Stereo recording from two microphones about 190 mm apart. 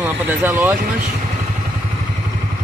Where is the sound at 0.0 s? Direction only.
10° right (ahead or behind).